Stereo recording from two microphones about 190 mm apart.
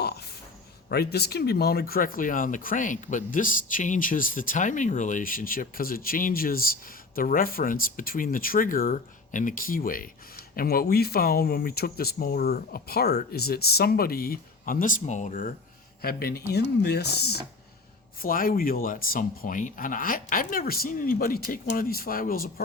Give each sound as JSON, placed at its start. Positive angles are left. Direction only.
{"t": 0.9, "sound": "speech", "side_deg": 60}
{"t": 18.2, "sound": "speech", "side_deg": 50}